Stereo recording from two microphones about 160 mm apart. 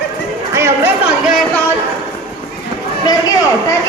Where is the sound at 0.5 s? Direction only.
15° right (ahead or behind).